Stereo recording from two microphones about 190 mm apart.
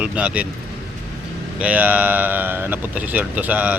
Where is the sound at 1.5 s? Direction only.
5° right (ahead or behind).